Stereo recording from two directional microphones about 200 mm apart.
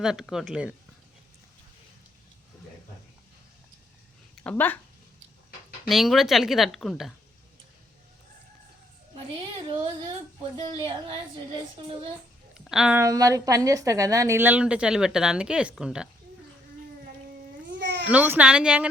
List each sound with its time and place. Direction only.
0.0 s speech: centre (ahead or behind)
4.4 s speech: 10° left (ahead or behind)
5.9 s speech: centre (ahead or behind)
9.3 s a sound: 25° right (ahead or behind)
12.5 s a sound: 5° right (ahead or behind)
13.0 s a woman's voice: 15° right (ahead or behind)
17.7 s baby cry: 60° right (ahead or behind)
18.1 s a woman's voice: 5° right (ahead or behind)